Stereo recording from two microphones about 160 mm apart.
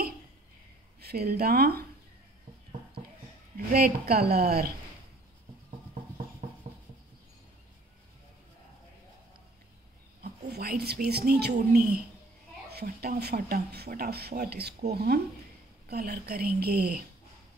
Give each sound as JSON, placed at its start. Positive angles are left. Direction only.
{"t": 1.0, "sound": "speech", "side_deg": -75}
{"t": 3.5, "sound": "speech", "side_deg": -70}
{"t": 6.4, "sound": "a sound", "side_deg": -50}
{"t": 10.2, "sound": "a woman's voice", "side_deg": -75}
{"t": 12.7, "sound": "speech", "side_deg": -70}
{"t": 15.9, "sound": "speech", "side_deg": -80}